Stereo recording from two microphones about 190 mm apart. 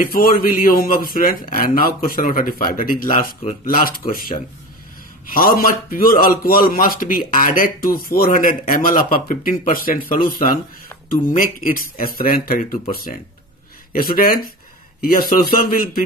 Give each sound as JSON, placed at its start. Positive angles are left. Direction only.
{"t": 0.0, "sound": "a man's voice", "side_deg": 50}